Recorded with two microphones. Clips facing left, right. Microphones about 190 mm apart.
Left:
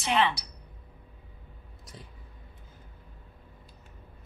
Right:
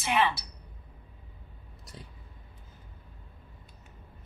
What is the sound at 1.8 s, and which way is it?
Speech, centre (ahead or behind).